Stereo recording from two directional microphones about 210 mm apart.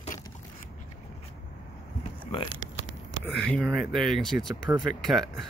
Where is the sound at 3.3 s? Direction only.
55° left (ahead or behind).